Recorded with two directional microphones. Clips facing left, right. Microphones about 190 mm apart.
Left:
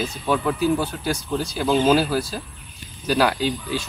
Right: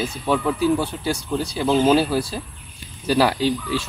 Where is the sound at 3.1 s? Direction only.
Centre (ahead or behind).